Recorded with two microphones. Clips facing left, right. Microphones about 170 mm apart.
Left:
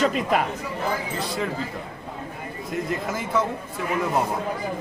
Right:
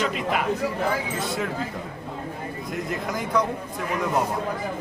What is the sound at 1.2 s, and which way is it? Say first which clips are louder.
Speech: even; centre (ahead or behind).